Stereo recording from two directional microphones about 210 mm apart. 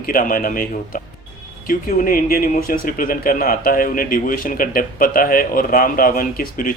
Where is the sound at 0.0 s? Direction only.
40° left (ahead or behind).